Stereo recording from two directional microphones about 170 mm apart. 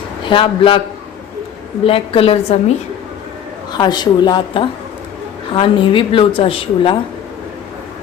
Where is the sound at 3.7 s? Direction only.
25° left (ahead or behind).